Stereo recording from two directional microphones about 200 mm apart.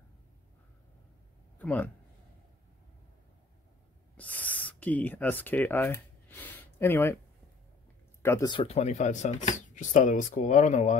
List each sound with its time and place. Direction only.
1.6 s speech: 10° left (ahead or behind)
4.2 s a sound: 10° left (ahead or behind)
8.2 s speech: 15° left (ahead or behind); by 11.0 s 35° left (ahead or behind)